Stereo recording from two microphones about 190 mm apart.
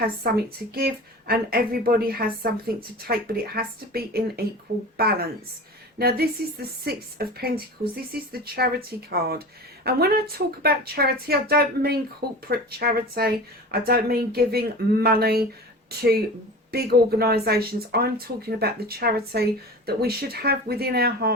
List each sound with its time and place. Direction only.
0.2 s speech: 55° right (ahead or behind)